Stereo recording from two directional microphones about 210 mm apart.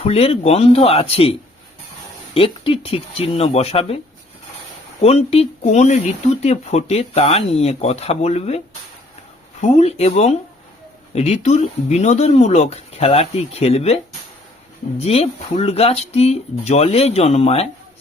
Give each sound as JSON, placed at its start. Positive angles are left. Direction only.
{"t": 0.0, "sound": "speech", "side_deg": 30}
{"t": 2.3, "sound": "speech", "side_deg": 25}
{"t": 5.0, "sound": "speech", "side_deg": 30}